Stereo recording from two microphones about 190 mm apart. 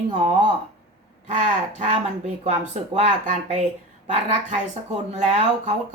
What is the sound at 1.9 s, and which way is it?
A woman's voice, 35° right (ahead or behind).